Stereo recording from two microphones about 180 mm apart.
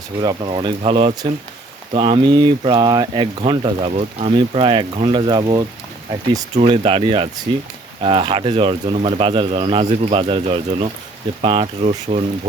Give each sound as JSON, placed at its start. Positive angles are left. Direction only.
{"t": 0.2, "sound": "speech", "side_deg": -25}